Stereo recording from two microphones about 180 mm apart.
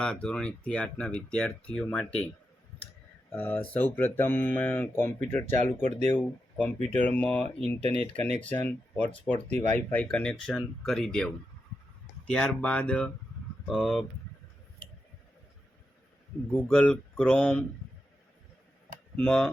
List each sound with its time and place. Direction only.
0.0 s speech: 5° left (ahead or behind)
3.3 s speech: 10° left (ahead or behind)
5.8 s speech: 40° right (ahead or behind)
6.1 s speech: 10° left (ahead or behind)
6.7 s speech: 35° right (ahead or behind)
7.2 s speech: 10° left (ahead or behind)
16.6 s speech: 5° left (ahead or behind)
19.1 s speech: 5° left (ahead or behind)